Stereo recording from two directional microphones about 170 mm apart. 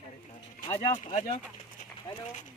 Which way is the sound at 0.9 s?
45° left (ahead or behind).